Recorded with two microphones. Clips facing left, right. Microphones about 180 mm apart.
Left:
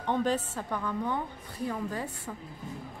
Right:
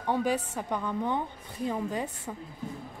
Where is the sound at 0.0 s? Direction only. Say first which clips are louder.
Even; 10° right (ahead or behind).